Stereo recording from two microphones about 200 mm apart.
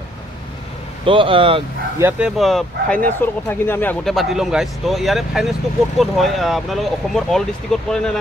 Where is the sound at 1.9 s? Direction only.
10° right (ahead or behind).